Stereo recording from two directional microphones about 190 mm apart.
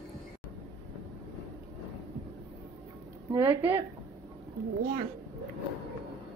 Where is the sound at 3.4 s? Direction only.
10° right (ahead or behind).